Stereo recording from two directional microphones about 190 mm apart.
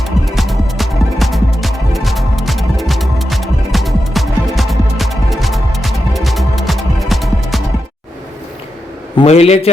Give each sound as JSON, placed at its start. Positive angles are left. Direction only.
{"t": 0.0, "sound": "music", "side_deg": 0}
{"t": 9.1, "sound": "a man's voice", "side_deg": 30}